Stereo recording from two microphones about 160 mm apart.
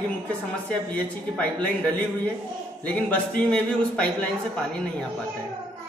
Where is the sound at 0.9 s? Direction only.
10° left (ahead or behind).